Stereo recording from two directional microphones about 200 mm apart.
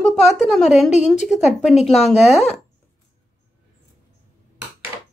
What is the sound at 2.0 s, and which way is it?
Speech, 30° left (ahead or behind).